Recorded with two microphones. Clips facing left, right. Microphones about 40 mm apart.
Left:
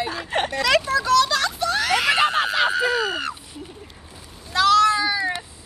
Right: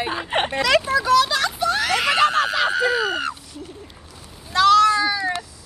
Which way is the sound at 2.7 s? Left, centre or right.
Centre.